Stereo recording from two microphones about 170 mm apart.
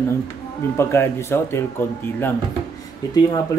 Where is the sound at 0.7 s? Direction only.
15° left (ahead or behind).